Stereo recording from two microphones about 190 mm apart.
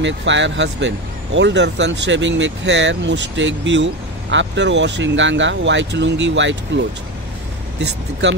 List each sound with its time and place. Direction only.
0.0 s speech: 70° right (ahead or behind)